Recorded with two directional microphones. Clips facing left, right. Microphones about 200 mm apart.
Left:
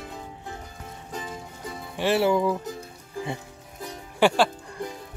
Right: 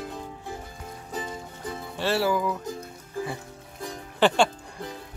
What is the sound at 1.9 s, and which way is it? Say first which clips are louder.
Speech: left 3 dB; 20° left (ahead or behind).